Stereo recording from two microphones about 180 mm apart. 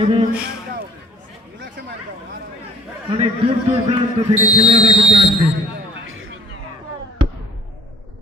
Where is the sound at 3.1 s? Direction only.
30° right (ahead or behind).